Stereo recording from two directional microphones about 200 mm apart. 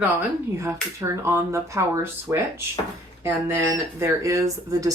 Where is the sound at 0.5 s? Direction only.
15° right (ahead or behind).